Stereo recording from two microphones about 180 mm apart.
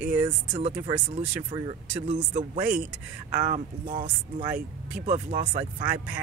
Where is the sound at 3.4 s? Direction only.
45° right (ahead or behind).